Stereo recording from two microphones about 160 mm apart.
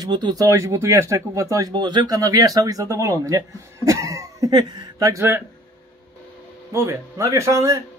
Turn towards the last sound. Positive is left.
turn(degrees=-20)  # may be behind; listen again after turning